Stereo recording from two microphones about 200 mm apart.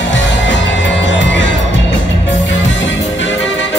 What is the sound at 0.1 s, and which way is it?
Music, 65° left (ahead or behind).